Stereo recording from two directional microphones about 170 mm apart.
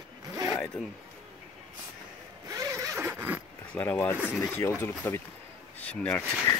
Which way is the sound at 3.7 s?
10° left (ahead or behind).